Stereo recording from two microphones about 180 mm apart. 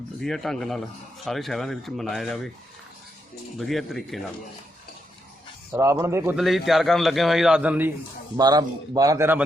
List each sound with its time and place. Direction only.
0.2 s a man's voice: centre (ahead or behind)
3.6 s a man's voice: centre (ahead or behind)
5.7 s speech: 15° right (ahead or behind)
6.3 s a man's voice: centre (ahead or behind)
8.4 s a man's voice: 20° right (ahead or behind)